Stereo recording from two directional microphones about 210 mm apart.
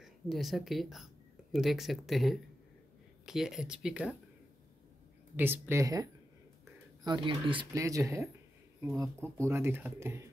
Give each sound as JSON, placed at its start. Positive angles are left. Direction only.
{"t": 0.0, "sound": "speech", "side_deg": 0}
{"t": 5.3, "sound": "speech", "side_deg": -10}
{"t": 7.1, "sound": "speech", "side_deg": -25}